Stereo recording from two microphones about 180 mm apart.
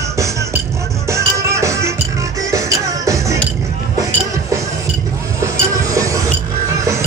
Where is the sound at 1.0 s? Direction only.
15° right (ahead or behind).